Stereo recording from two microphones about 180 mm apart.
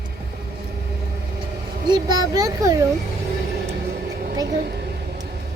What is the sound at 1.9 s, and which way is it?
Speech, 20° right (ahead or behind).